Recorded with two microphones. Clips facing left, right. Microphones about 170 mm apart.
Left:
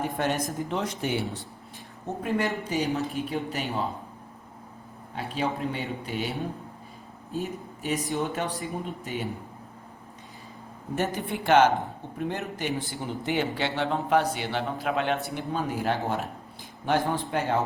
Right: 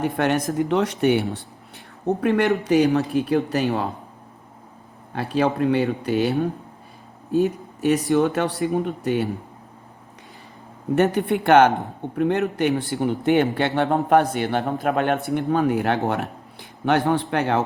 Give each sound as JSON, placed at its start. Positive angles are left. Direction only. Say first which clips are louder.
{"t": 0.0, "sound": "speech", "louder": "right 6 dB", "side_deg": -70}
{"t": 2.2, "sound": "speech", "louder": "right 8 dB", "side_deg": -75}
{"t": 5.1, "sound": "speech", "louder": "right 8 dB", "side_deg": -70}
{"t": 10.9, "sound": "a man's voice", "louder": "right 10 dB", "side_deg": -65}